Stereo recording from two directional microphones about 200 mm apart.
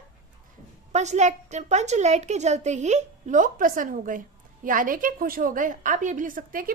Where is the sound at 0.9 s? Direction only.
35° right (ahead or behind).